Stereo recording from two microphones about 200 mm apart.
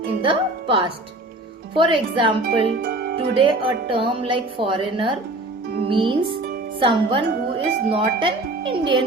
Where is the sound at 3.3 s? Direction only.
25° right (ahead or behind).